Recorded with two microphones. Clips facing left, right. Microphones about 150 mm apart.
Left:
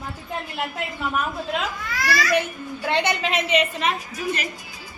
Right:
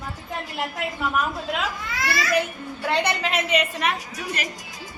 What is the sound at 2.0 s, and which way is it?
Speech, 25° right (ahead or behind).